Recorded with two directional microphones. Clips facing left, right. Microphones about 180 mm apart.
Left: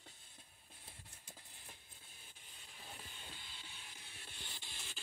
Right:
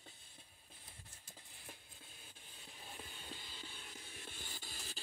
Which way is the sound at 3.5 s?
45° right (ahead or behind).